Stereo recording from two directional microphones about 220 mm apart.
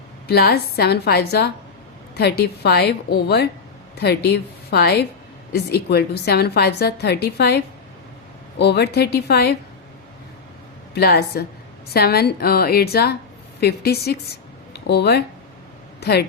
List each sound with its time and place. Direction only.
0.3 s a woman's voice: 45° left (ahead or behind)
10.9 s a woman's voice: 45° left (ahead or behind)
14.7 s a sound: 50° left (ahead or behind)
16.0 s speech: 45° left (ahead or behind)